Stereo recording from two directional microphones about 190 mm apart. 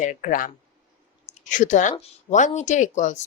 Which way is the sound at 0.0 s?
45° left (ahead or behind).